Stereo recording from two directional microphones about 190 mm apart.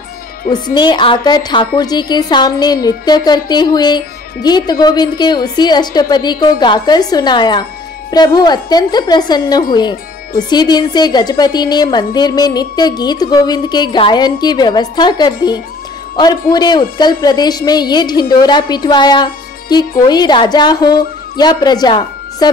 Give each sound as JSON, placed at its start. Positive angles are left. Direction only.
{"t": 0.5, "sound": "a woman's voice", "side_deg": 25}
{"t": 16.5, "sound": "a woman's voice", "side_deg": 20}